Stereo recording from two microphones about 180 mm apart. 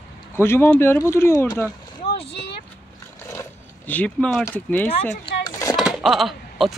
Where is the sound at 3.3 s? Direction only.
10° left (ahead or behind).